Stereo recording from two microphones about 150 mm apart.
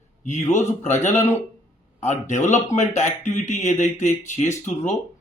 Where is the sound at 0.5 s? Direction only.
50° left (ahead or behind).